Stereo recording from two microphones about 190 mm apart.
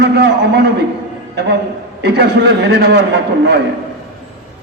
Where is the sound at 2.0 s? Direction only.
60° right (ahead or behind).